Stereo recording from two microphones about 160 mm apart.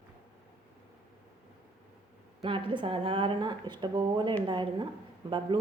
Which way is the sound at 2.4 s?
30° right (ahead or behind).